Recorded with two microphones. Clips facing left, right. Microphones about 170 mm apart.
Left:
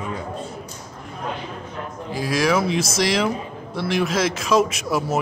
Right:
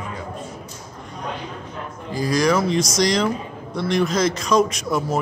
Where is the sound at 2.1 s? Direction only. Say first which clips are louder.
Right 1 dB; 5° left (ahead or behind).